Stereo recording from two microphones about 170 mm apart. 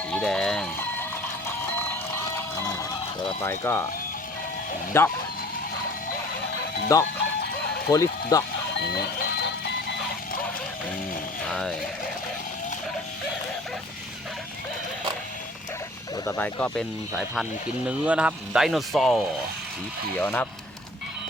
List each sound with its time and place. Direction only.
0.1 s a sound: 5° left (ahead or behind)
1.7 s music: 15° left (ahead or behind)
3.4 s speech: 15° left (ahead or behind)
4.9 s speech: 15° left (ahead or behind)
6.9 s speech: 20° left (ahead or behind)
8.8 s a sound: 80° left
11.4 s speech: 5° left (ahead or behind)
16.2 s speech: 10° left (ahead or behind)
17.8 s speech: 5° right (ahead or behind)
20.1 s speech: 10° left (ahead or behind)